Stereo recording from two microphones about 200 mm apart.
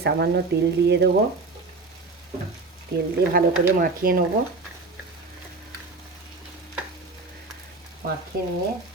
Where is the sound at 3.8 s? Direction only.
45° right (ahead or behind).